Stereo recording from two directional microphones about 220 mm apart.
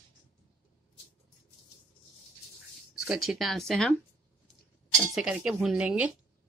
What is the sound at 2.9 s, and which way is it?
Speech, centre (ahead or behind).